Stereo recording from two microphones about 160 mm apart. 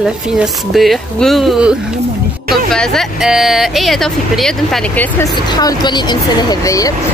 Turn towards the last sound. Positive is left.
turn(degrees=20)  # may be behind; listen again after turning